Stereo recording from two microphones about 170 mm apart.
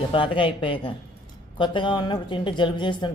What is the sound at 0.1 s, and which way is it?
Speech, 30° left (ahead or behind).